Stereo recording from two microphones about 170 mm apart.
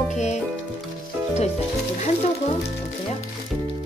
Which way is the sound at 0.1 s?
45° left (ahead or behind).